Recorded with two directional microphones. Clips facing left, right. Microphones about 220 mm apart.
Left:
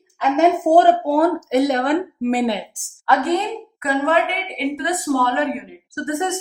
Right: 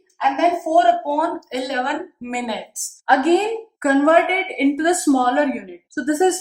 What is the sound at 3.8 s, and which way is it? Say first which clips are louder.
A woman's voice: right 5 dB; 50° right (ahead or behind).